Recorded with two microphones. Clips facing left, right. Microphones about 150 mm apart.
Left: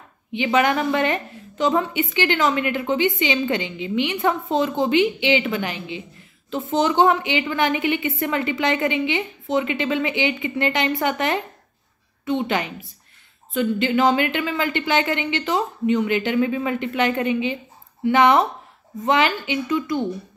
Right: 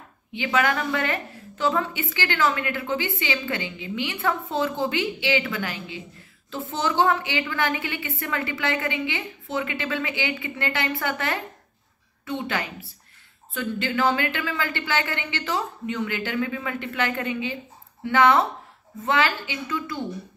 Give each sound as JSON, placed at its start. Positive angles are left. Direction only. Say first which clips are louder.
{"t": 0.3, "sound": "a woman's voice", "louder": "left 4 dB", "side_deg": 20}